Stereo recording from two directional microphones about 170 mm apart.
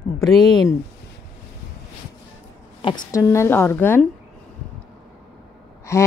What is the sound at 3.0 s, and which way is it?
Speech, 15° left (ahead or behind).